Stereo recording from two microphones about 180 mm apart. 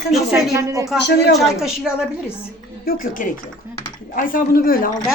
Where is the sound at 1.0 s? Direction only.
70° left (ahead or behind).